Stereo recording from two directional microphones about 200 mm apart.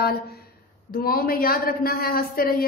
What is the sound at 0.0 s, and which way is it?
A man's voice, 50° left (ahead or behind).